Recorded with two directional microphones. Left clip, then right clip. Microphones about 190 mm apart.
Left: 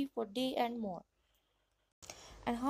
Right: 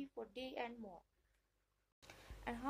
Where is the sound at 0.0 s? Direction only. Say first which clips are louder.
Left 11 dB; 45° left (ahead or behind).